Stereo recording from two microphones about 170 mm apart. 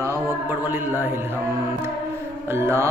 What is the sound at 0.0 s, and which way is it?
Mantra, 10° right (ahead or behind).